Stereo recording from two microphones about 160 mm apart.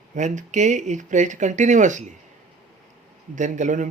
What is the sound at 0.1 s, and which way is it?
Speech, 50° right (ahead or behind).